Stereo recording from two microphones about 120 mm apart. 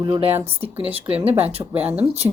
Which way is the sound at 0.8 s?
55° right (ahead or behind).